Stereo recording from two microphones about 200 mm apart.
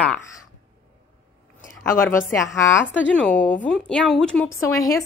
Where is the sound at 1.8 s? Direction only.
10° left (ahead or behind).